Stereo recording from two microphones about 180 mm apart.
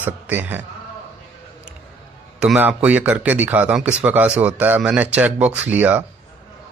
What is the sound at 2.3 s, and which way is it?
A man's voice, 10° right (ahead or behind).